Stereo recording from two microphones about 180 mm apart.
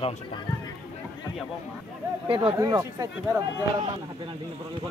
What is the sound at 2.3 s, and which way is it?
Speech, 25° right (ahead or behind).